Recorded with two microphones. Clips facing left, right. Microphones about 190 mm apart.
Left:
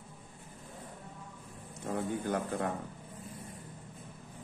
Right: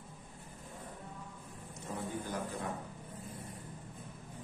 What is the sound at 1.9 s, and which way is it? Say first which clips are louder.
Speech: left 7 dB; 60° left (ahead or behind).